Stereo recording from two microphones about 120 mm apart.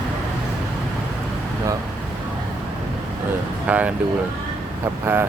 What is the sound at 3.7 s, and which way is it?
Speech, 10° right (ahead or behind).